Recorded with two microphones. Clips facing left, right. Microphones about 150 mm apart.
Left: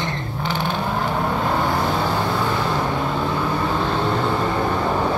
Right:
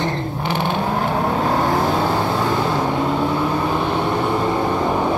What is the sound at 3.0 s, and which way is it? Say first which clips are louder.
Vehicle: right 3 dB; 20° right (ahead or behind).